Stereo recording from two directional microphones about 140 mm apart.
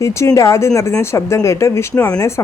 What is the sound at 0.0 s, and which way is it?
A woman's voice, 20° left (ahead or behind).